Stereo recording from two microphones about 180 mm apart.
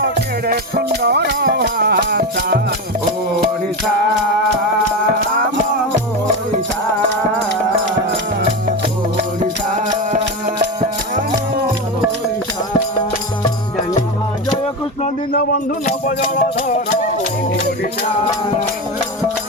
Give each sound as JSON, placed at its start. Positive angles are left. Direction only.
{"t": 0.4, "sound": "music", "side_deg": -60}
{"t": 10.6, "sound": "music", "side_deg": -45}
{"t": 15.9, "sound": "music", "side_deg": 45}